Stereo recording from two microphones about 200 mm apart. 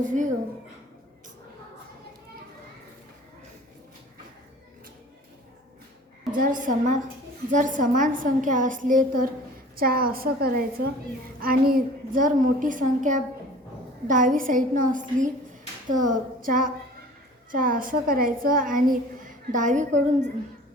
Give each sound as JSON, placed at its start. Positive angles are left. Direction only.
{"t": 0.0, "sound": "a woman's voice", "side_deg": -40}
{"t": 6.3, "sound": "a woman's voice", "side_deg": -45}